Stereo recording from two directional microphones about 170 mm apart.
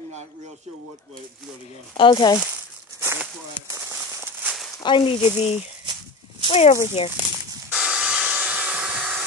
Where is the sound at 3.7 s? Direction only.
15° right (ahead or behind).